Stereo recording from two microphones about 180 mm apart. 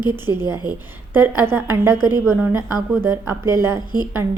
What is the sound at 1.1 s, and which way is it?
A woman's voice, 10° right (ahead or behind).